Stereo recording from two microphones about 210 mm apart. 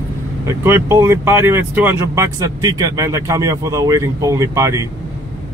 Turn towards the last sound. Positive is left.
turn(degrees=-15)  # may be behind; listen again after turning